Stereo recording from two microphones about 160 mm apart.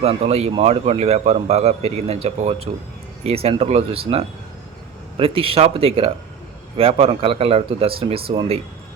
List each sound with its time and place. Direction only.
0.0 s a man's voice: 40° right (ahead or behind)